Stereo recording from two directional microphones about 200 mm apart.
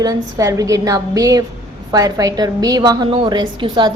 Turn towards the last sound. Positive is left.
turn(degrees=-20)  # may be behind; listen again after turning